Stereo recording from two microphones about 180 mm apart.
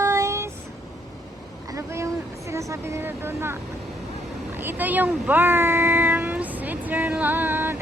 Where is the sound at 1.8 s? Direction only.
15° right (ahead or behind).